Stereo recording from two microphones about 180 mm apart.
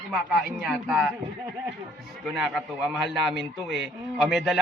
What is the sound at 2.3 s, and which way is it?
A man's voice, centre (ahead or behind).